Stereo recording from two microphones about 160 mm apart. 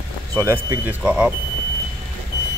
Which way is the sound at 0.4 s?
15° right (ahead or behind).